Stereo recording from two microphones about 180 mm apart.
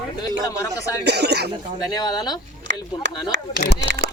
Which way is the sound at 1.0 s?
65° right (ahead or behind).